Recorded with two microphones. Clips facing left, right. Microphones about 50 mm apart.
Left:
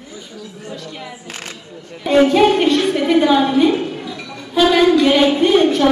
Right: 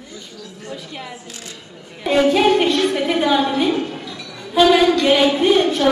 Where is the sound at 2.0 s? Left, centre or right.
Centre.